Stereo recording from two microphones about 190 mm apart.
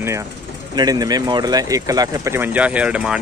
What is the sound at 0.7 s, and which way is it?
Speech, 20° right (ahead or behind).